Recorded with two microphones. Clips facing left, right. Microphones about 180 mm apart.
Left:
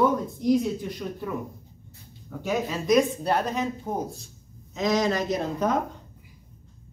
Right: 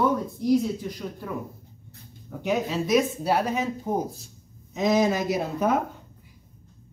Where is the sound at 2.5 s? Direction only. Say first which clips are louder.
Even; centre (ahead or behind).